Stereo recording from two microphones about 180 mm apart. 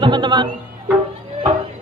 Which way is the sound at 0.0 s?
25° right (ahead or behind).